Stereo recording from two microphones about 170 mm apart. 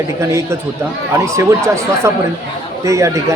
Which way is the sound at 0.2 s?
15° right (ahead or behind).